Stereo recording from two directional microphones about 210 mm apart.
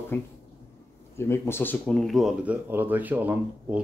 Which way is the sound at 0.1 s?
10° left (ahead or behind).